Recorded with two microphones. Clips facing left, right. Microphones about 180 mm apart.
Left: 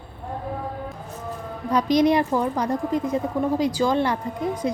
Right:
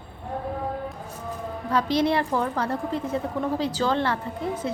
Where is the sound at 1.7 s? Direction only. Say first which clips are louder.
Left 4 dB; 15° left (ahead or behind).